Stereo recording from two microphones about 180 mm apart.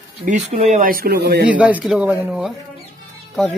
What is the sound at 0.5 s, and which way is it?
Speech, 40° right (ahead or behind).